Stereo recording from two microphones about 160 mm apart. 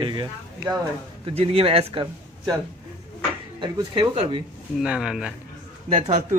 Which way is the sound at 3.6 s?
35° right (ahead or behind).